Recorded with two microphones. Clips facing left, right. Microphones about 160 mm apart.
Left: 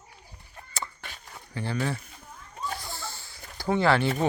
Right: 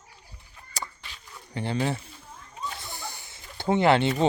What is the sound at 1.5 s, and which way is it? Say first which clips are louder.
Speech: right 2 dB; 20° right (ahead or behind).